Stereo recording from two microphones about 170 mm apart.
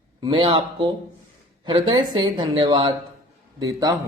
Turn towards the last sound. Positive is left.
turn(degrees=-20)  # may be behind; listen again after turning